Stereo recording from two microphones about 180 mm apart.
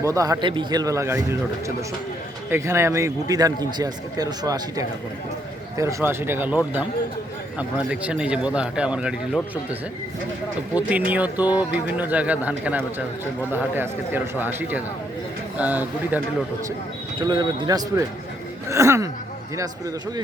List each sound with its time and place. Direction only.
0.0 s a man's voice: 20° right (ahead or behind)
7.9 s a man's voice: 5° right (ahead or behind)
10.8 s a man's voice: 10° right (ahead or behind)
17.2 s a man's voice: 25° right (ahead or behind)